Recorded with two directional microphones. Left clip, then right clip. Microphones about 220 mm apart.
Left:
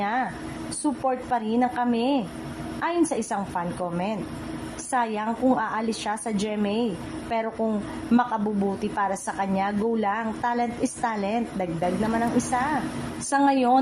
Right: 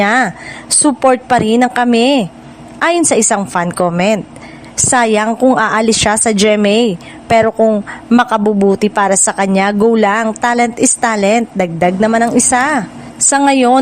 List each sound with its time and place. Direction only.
0.0 s a woman's voice: 55° right (ahead or behind)